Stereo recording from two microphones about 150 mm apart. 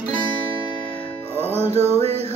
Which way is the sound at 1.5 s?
45° right (ahead or behind).